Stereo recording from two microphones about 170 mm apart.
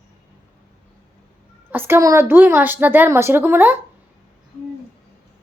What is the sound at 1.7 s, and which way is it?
A woman's voice, 15° right (ahead or behind).